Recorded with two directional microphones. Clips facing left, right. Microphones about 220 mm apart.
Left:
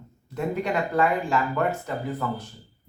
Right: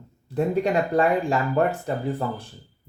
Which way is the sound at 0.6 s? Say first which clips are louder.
Even; 30° right (ahead or behind).